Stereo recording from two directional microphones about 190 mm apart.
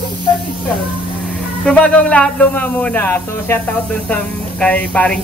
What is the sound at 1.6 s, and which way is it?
A man's voice, 5° left (ahead or behind).